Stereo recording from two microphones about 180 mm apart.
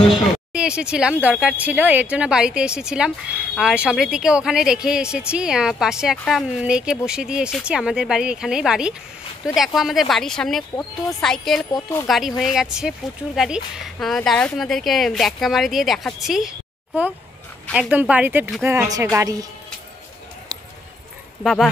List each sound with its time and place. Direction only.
0.1 s speech: 5° right (ahead or behind)
11.7 s speech: 15° left (ahead or behind)
12.1 s a woman's voice: centre (ahead or behind); by 19.4 s 20° right (ahead or behind)
20.5 s clip-clop: 20° right (ahead or behind)
21.4 s speech: centre (ahead or behind)